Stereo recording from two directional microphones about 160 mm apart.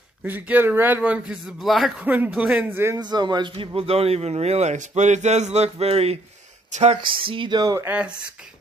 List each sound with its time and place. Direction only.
0.2 s speech: 10° right (ahead or behind)
3.0 s a man's voice: 25° right (ahead or behind); by 7.0 s 45° right (ahead or behind)
7.0 s speech: 30° right (ahead or behind); by 8.1 s 10° right (ahead or behind)